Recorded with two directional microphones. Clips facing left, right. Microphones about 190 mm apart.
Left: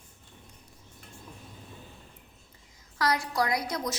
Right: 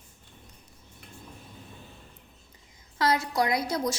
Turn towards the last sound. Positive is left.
turn(degrees=-25)  # may be behind; listen again after turning